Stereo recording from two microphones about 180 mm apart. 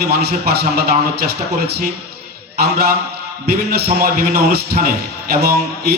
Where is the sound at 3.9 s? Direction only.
60° right (ahead or behind).